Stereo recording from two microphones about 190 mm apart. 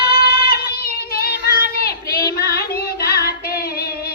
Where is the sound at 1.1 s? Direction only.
55° left (ahead or behind).